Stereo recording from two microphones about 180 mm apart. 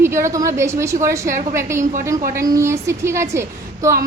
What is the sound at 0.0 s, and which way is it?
A woman's voice, 15° right (ahead or behind).